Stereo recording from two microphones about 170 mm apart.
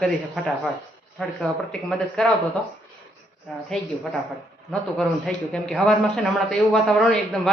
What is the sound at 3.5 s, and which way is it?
Speech, centre (ahead or behind).